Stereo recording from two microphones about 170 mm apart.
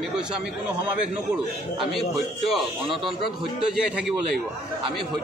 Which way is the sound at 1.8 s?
Centre (ahead or behind).